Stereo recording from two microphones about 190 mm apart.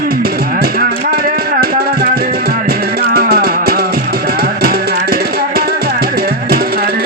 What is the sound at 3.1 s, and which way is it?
Music, 55° right (ahead or behind).